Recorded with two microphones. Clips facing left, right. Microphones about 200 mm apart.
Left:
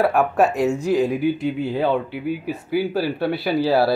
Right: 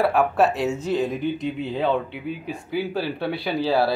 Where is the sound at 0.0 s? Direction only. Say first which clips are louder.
Left 2 dB; 5° left (ahead or behind).